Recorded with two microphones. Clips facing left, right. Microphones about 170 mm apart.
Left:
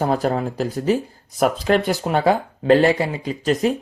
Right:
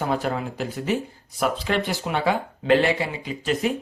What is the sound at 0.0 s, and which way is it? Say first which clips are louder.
Speech: left 5 dB; 40° left (ahead or behind).